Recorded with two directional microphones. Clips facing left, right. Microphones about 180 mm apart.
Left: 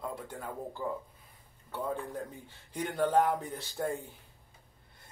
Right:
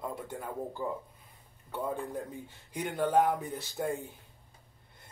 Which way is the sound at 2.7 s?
15° right (ahead or behind).